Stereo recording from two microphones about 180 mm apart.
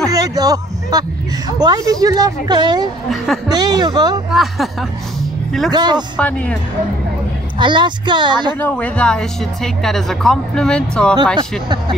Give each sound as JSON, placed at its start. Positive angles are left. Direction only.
{"t": 0.1, "sound": "speech", "side_deg": -20}
{"t": 4.3, "sound": "speech", "side_deg": 0}
{"t": 5.7, "sound": "speech", "side_deg": -25}
{"t": 6.1, "sound": "speech", "side_deg": 5}
{"t": 7.5, "sound": "speech", "side_deg": -25}
{"t": 8.5, "sound": "speech", "side_deg": 10}